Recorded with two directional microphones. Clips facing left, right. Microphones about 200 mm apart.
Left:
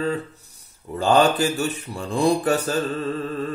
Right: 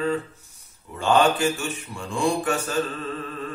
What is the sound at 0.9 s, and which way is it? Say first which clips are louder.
Mantra: left 2 dB; 35° left (ahead or behind).